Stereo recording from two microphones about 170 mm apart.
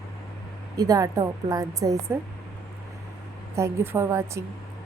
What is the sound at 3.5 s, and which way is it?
Speech, 15° right (ahead or behind).